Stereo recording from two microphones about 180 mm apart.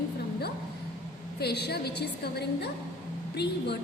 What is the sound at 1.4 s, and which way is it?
A woman's voice, 65° left (ahead or behind).